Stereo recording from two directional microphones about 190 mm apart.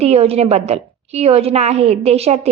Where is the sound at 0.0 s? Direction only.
30° right (ahead or behind).